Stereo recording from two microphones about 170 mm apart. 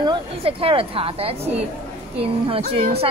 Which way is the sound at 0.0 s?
30° right (ahead or behind).